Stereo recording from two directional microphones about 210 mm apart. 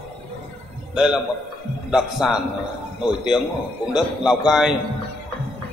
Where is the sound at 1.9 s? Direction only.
5° right (ahead or behind).